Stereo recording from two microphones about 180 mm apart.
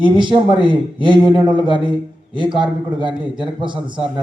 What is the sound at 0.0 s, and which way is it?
A man's voice, 25° right (ahead or behind).